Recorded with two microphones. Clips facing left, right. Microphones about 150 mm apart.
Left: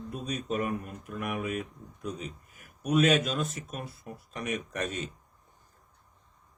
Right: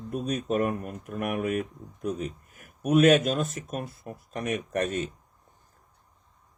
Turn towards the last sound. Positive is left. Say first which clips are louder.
# right 6 dB
turn(degrees=-50)  # may be behind; listen again after turning